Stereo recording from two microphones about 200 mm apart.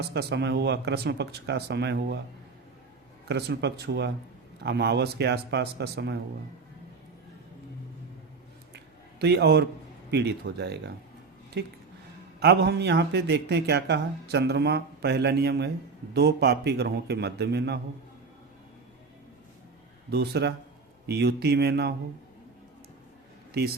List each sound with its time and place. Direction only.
0.0 s speech: 55° right (ahead or behind)
3.2 s speech: 60° right (ahead or behind)
8.7 s a sound: 55° right (ahead or behind)
10.1 s speech: 55° right (ahead or behind)
12.4 s speech: 55° right (ahead or behind)
20.1 s speech: 55° right (ahead or behind)